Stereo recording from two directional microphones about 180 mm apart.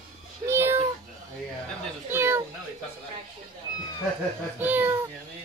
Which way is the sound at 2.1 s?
15° right (ahead or behind).